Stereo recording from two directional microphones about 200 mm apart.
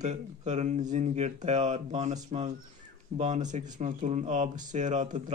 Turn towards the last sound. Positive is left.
turn(degrees=-35)  # may be behind; listen again after turning